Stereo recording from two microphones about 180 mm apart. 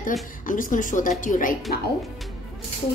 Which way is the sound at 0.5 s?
45° left (ahead or behind).